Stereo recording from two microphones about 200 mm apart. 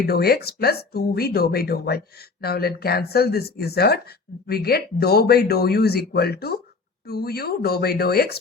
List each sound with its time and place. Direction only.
0.0 s speech: 50° left (ahead or behind)